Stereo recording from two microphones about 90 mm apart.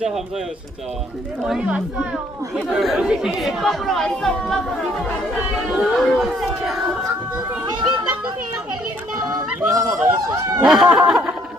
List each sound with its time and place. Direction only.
1.5 s speech: 10° right (ahead or behind)
7.7 s a sound: 55° right (ahead or behind)
9.7 s honk: 35° right (ahead or behind)
10.6 s speech: 5° right (ahead or behind)